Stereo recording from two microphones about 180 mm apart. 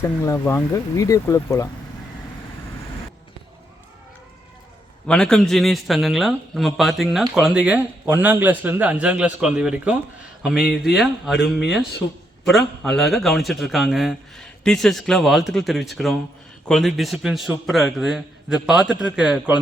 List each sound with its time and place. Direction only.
0.0 s speech: 15° left (ahead or behind)
5.0 s speech: 5° left (ahead or behind)